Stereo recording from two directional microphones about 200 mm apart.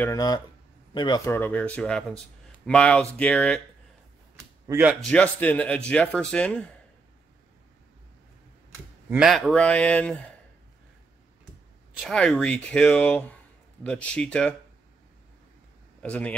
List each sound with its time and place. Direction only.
0.0 s speech: 15° left (ahead or behind)
4.4 s a sound: 15° right (ahead or behind)
5.0 s speech: 5° left (ahead or behind)
9.1 s speech: centre (ahead or behind)
11.9 s speech: centre (ahead or behind)
16.0 s speech: 5° left (ahead or behind)